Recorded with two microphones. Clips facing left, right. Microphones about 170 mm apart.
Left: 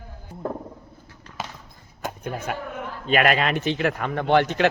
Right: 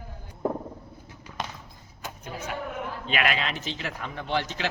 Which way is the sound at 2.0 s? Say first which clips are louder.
Left 7 dB; 55° left (ahead or behind).